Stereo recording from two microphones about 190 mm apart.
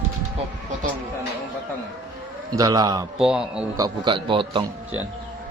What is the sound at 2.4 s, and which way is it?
Speech, 20° right (ahead or behind).